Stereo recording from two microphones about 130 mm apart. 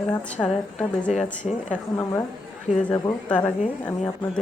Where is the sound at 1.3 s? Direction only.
70° left (ahead or behind).